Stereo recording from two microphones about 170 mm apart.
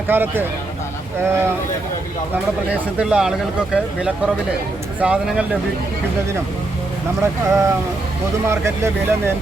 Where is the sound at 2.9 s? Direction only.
5° right (ahead or behind).